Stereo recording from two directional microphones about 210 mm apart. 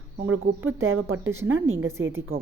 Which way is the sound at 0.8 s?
70° right (ahead or behind).